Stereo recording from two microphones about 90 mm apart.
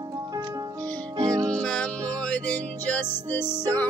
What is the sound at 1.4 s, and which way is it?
Music, 10° left (ahead or behind).